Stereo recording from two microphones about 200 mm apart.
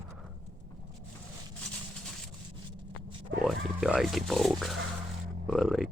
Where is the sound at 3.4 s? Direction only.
Centre (ahead or behind).